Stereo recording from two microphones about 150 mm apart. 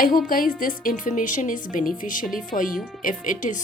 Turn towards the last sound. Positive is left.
turn(degrees=60)  # may be behind; listen again after turning